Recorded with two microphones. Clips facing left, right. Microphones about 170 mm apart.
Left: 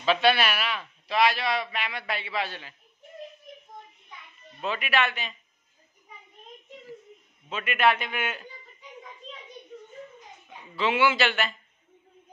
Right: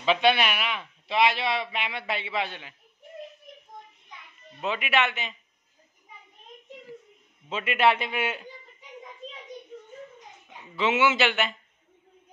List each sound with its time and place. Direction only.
0.0 s a man's voice: 20° right (ahead or behind)
4.6 s a man's voice: 20° right (ahead or behind)
7.4 s a man's voice: 25° right (ahead or behind)
10.8 s a man's voice: 20° right (ahead or behind)